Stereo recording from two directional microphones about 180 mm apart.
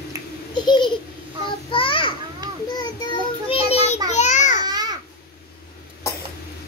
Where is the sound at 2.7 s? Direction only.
30° left (ahead or behind).